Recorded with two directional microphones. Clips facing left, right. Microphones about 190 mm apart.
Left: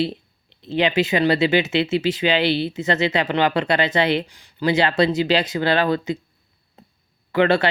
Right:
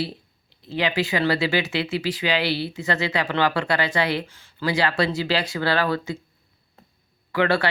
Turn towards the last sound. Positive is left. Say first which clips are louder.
# left 4 dB
turn(degrees=25)  # may be behind; listen again after turning